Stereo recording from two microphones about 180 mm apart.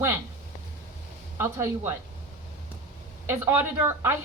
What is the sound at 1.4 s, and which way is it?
Speech, 15° right (ahead or behind).